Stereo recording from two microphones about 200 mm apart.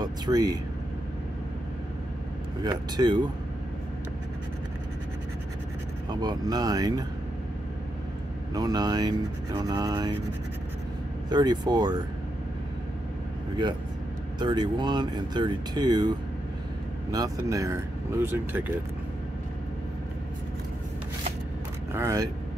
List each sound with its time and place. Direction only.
0.0 s speech: 20° right (ahead or behind)
2.6 s speech: 20° right (ahead or behind)
6.0 s speech: 20° right (ahead or behind)
8.5 s speech: 20° right (ahead or behind)
11.2 s speech: 20° right (ahead or behind)
14.4 s speech: 20° right (ahead or behind)
17.1 s speech: 15° right (ahead or behind)
21.9 s speech: 15° right (ahead or behind)